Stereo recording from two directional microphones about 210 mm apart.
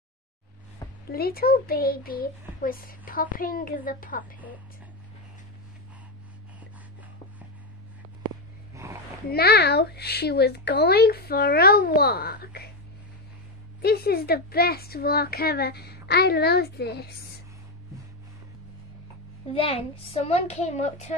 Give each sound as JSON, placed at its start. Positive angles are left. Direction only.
{"t": 0.8, "sound": "a sound", "side_deg": 20}
{"t": 1.1, "sound": "speech", "side_deg": 45}
{"t": 9.3, "sound": "speech", "side_deg": 50}
{"t": 13.8, "sound": "speech", "side_deg": 50}
{"t": 19.5, "sound": "a child's voice", "side_deg": 25}